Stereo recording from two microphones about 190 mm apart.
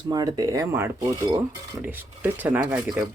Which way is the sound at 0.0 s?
20° right (ahead or behind).